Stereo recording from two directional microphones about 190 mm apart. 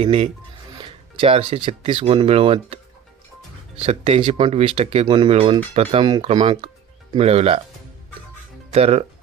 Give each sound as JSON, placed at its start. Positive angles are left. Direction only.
{"t": 0.0, "sound": "speech", "side_deg": -35}
{"t": 3.8, "sound": "speech", "side_deg": -30}
{"t": 8.7, "sound": "speech", "side_deg": -35}